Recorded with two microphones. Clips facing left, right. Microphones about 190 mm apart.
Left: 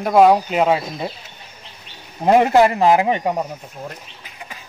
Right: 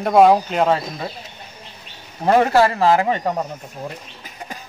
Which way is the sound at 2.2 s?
15° left (ahead or behind).